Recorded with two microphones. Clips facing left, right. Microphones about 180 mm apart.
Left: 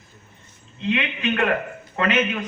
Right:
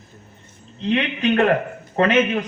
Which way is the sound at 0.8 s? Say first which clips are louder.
Right 4 dB; 40° right (ahead or behind).